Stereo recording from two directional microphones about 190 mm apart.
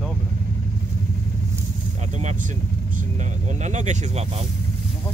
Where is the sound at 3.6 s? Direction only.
40° right (ahead or behind).